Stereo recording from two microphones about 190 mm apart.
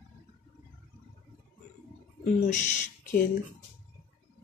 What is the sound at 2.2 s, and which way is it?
Speech, 40° left (ahead or behind).